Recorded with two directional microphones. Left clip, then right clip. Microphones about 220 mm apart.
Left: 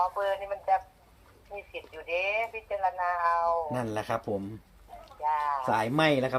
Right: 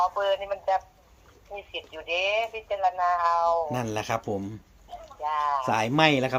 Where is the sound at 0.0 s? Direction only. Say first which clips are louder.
Right 4 dB; 40° right (ahead or behind).